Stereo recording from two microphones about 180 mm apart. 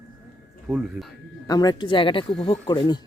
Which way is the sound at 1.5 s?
20° left (ahead or behind).